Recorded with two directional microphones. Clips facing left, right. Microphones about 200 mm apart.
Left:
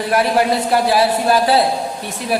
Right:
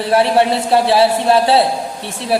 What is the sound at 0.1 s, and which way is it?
Speech, 30° right (ahead or behind).